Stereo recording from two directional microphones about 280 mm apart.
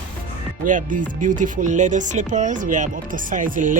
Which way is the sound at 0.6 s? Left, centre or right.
Right.